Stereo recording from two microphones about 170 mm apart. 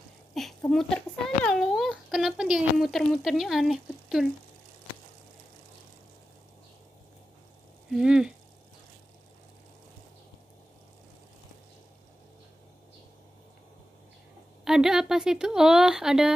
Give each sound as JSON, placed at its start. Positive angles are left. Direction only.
{"t": 0.3, "sound": "a sound", "side_deg": 0}
{"t": 7.9, "sound": "a woman's voice", "side_deg": -5}
{"t": 14.6, "sound": "a woman's voice", "side_deg": -5}